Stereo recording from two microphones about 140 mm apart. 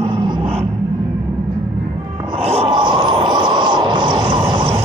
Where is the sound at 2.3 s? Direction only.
45° right (ahead or behind).